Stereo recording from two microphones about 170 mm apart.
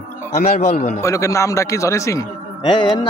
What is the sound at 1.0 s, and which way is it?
A man's voice, 20° left (ahead or behind).